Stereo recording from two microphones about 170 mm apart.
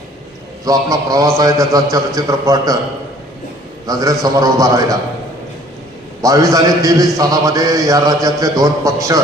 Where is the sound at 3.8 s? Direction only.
20° right (ahead or behind).